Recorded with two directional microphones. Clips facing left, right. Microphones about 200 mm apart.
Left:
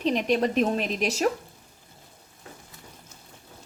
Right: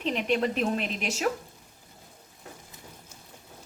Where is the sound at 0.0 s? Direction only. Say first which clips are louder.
Left 3 dB; 40° left (ahead or behind).